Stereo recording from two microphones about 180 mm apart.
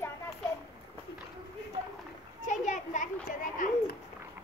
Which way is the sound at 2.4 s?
45° left (ahead or behind).